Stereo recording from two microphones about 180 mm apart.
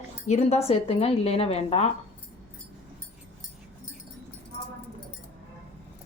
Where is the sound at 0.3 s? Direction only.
35° left (ahead or behind).